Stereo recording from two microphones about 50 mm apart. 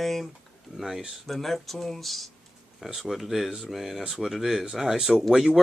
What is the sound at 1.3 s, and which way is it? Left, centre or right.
Speech, centre.